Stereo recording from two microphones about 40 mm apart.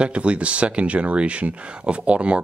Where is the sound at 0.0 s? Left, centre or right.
Right.